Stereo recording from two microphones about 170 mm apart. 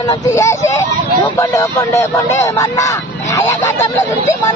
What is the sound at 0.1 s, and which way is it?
Speech, 20° left (ahead or behind).